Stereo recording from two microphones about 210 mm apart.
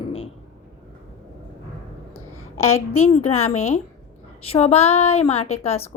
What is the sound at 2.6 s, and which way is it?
Speech, 90° left.